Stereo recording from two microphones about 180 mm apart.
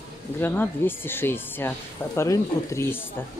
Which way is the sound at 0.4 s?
10° left (ahead or behind).